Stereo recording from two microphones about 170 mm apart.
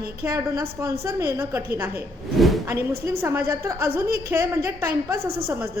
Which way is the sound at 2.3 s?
Centre (ahead or behind).